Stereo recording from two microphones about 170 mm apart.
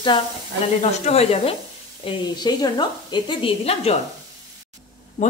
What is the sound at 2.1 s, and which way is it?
Speech, 25° left (ahead or behind).